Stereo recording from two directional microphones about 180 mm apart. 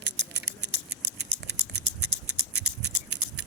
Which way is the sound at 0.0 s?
75° right (ahead or behind).